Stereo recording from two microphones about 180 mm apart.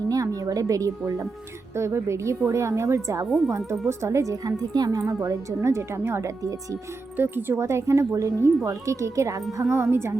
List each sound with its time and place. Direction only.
0.1 s a woman's voice: 20° right (ahead or behind)
3.2 s speech: centre (ahead or behind)
3.7 s a woman's voice: 15° right (ahead or behind)